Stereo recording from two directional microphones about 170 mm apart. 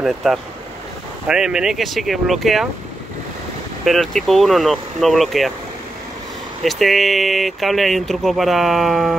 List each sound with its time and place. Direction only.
0.0 s speech: centre (ahead or behind)
3.8 s speech: centre (ahead or behind)
6.6 s speech: centre (ahead or behind)